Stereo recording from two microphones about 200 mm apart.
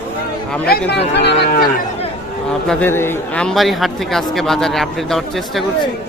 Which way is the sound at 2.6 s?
10° left (ahead or behind).